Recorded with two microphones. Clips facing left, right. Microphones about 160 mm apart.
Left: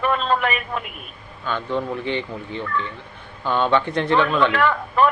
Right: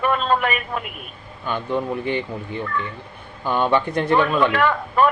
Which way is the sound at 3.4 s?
10° right (ahead or behind).